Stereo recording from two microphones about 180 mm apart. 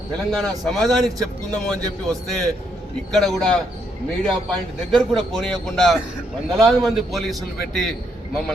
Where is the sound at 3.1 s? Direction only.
Centre (ahead or behind).